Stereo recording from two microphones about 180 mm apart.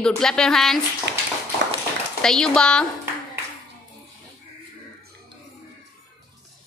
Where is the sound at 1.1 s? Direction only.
80° right.